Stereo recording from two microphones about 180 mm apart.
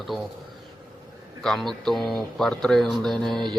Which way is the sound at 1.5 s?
5° left (ahead or behind).